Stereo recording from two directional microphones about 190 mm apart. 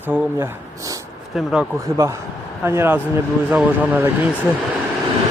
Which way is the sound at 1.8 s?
15° right (ahead or behind).